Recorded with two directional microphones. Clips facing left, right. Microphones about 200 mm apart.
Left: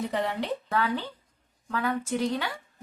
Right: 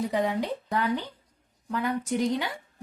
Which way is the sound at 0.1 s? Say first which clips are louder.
Right 2 dB; 10° right (ahead or behind).